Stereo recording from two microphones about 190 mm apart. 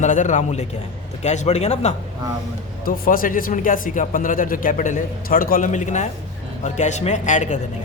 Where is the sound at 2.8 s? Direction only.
45° left (ahead or behind).